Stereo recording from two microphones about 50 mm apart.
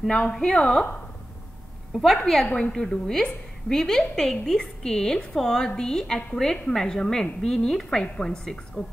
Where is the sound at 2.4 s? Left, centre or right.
Left.